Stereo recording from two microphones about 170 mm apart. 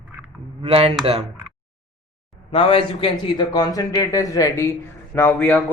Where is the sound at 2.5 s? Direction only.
35° left (ahead or behind).